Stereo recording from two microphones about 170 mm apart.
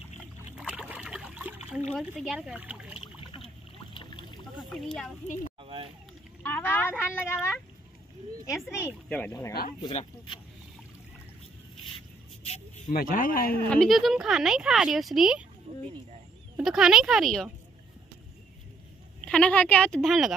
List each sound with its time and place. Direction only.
0.6 s trickle: 5° right (ahead or behind)
1.9 s speech: centre (ahead or behind)
3.0 s boat: 30° left (ahead or behind)
4.6 s speech: centre (ahead or behind)
5.6 s a sound: 30° right (ahead or behind)
6.4 s a sound: 10° left (ahead or behind)
8.6 s speech: 10° left (ahead or behind)
9.9 s speech: 30° left (ahead or behind)
12.9 s speech: 55° left (ahead or behind)
13.7 s speech: centre (ahead or behind)
16.5 s speech: 5° right (ahead or behind)
19.2 s speech: 5° left (ahead or behind)